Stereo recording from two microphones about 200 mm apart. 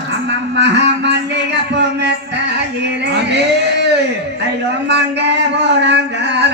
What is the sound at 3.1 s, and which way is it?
Male singing, 60° right (ahead or behind).